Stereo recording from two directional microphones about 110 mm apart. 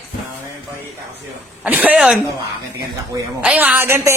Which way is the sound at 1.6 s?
15° right (ahead or behind).